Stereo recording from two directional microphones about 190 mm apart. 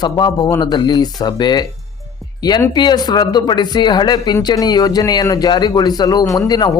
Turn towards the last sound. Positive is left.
turn(degrees=20)  # may be behind; listen again after turning